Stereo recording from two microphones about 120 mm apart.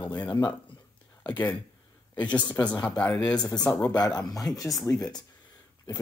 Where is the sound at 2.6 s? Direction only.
10° left (ahead or behind).